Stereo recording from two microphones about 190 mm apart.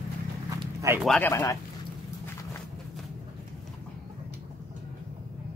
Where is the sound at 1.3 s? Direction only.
15° left (ahead or behind).